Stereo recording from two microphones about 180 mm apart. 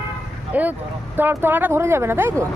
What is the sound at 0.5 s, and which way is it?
Speech, 10° right (ahead or behind).